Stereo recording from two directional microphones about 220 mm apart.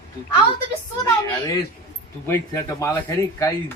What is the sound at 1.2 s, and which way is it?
Speech, 10° left (ahead or behind).